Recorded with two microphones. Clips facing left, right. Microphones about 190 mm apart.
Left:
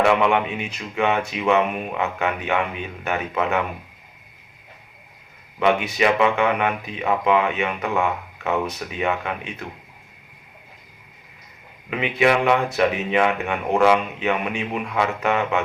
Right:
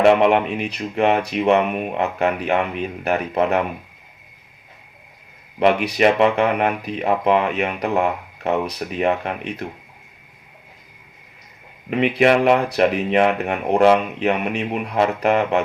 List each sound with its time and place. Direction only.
0.0 s speech: 35° right (ahead or behind)
5.8 s speech: 35° right (ahead or behind)
11.9 s speech: 35° right (ahead or behind)